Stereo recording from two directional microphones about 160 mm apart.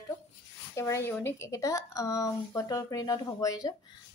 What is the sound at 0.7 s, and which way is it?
A woman's voice, 15° left (ahead or behind).